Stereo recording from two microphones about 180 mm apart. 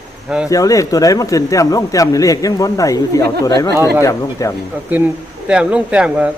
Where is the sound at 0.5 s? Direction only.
20° left (ahead or behind).